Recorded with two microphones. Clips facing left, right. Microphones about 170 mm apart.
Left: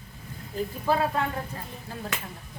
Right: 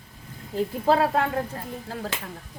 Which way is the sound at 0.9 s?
70° right (ahead or behind).